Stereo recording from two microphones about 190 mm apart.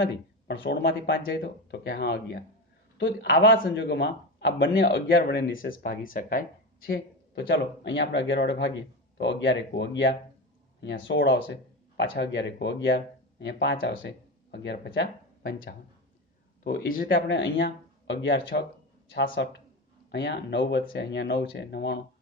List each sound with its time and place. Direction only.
0.0 s a man's voice: 65° left (ahead or behind)
16.6 s speech: 50° left (ahead or behind)
17.1 s a man's voice: 70° left (ahead or behind)